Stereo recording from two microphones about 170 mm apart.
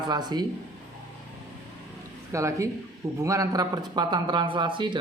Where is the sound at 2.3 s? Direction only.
15° right (ahead or behind).